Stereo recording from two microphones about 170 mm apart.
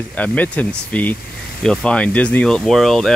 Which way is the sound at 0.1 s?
10° left (ahead or behind).